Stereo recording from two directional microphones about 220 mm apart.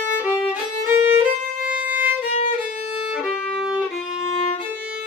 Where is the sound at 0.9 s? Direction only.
10° right (ahead or behind).